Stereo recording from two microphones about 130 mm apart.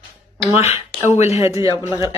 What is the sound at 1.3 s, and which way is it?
Speech, 25° right (ahead or behind).